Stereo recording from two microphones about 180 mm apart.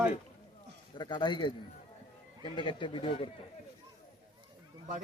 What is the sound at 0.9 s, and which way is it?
Speech, 25° left (ahead or behind).